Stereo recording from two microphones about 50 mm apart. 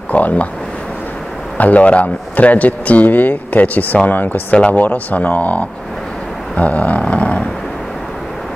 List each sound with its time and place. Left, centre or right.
0.1 s speech: left
1.6 s a man's voice: left
4.5 s a man's voice: left
6.5 s a sound: left